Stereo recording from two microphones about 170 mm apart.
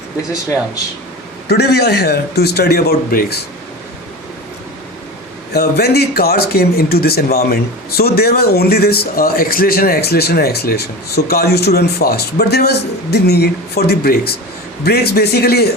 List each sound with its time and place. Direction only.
1.5 s a man's voice: 75° left (ahead or behind)
5.5 s a man's voice: 70° left (ahead or behind)